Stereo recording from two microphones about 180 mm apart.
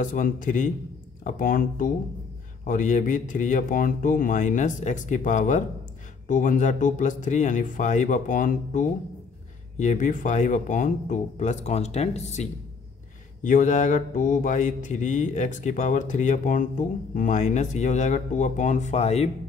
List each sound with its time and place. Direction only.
0.0 s mantra: 45° left (ahead or behind)
9.8 s speech: 45° left (ahead or behind)
13.4 s mantra: 45° left (ahead or behind)